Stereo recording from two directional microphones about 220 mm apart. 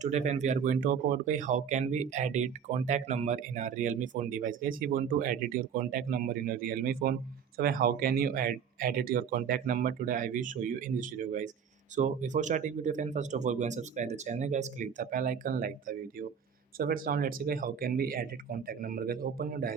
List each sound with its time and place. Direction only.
0.0 s speech: 30° right (ahead or behind)